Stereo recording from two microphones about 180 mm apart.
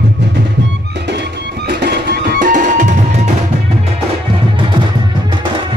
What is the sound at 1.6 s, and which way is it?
Music, 65° right (ahead or behind).